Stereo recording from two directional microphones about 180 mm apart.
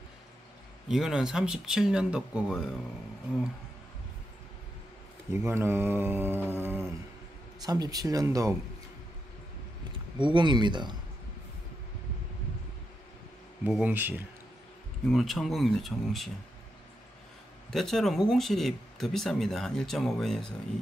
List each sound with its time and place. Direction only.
0.8 s speech: centre (ahead or behind)
5.3 s mantra: 15° right (ahead or behind)
7.6 s speech: 20° right (ahead or behind)
10.1 s speech: 25° right (ahead or behind)
13.7 s mantra: 5° right (ahead or behind)
15.0 s speech: centre (ahead or behind)
17.6 s speech: centre (ahead or behind)